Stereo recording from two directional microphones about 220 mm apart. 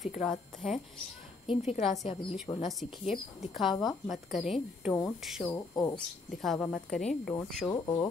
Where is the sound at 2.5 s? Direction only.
20° left (ahead or behind).